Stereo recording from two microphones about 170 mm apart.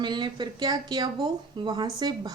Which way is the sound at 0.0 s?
25° right (ahead or behind).